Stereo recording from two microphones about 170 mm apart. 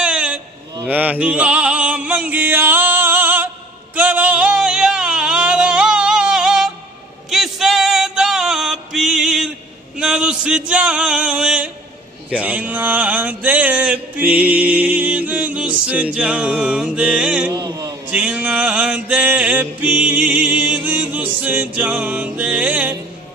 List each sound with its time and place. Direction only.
0.0 s a sound: 5° right (ahead or behind)
0.8 s music: 10° right (ahead or behind)
9.9 s a sound: 5° right (ahead or behind)
12.3 s mantra: 10° right (ahead or behind)
17.5 s mantra: 20° right (ahead or behind)
18.0 s music: 10° right (ahead or behind)